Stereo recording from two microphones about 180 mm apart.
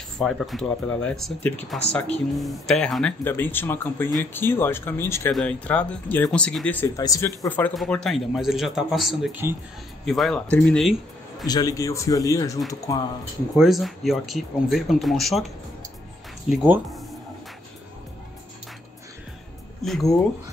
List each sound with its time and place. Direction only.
0.2 s a man's voice: centre (ahead or behind)
11.4 s a man's voice: 20° left (ahead or behind)
13.6 s a man's voice: centre (ahead or behind)
19.8 s speech: centre (ahead or behind)